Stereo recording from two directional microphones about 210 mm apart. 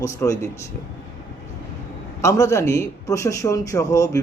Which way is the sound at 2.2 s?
15° left (ahead or behind).